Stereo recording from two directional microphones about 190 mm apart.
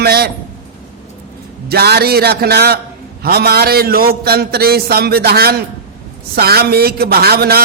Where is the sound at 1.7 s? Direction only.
55° right (ahead or behind).